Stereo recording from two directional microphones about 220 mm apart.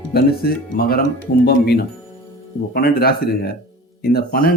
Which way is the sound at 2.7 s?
45° left (ahead or behind).